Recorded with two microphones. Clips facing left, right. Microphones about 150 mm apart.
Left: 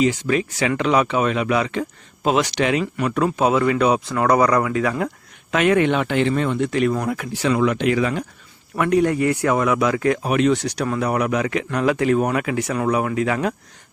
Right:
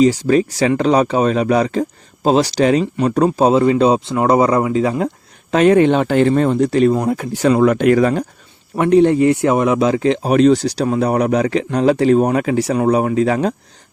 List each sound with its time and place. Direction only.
0.0 s speech: 35° right (ahead or behind)
7.3 s speech: 45° right (ahead or behind)
8.7 s speech: 25° right (ahead or behind)